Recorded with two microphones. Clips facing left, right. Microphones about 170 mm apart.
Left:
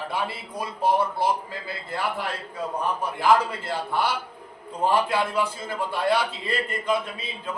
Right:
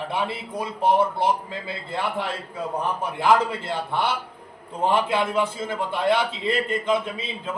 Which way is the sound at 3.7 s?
25° right (ahead or behind).